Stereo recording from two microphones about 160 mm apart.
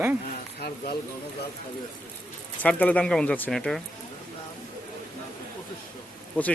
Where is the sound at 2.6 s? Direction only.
10° left (ahead or behind).